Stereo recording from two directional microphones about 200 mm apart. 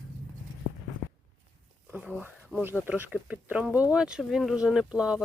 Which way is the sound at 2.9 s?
10° right (ahead or behind).